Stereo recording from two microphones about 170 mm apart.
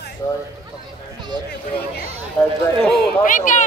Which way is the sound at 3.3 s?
45° left (ahead or behind).